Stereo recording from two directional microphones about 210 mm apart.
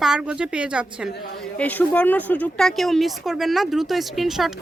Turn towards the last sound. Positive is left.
turn(degrees=0)  # may be behind; listen again after turning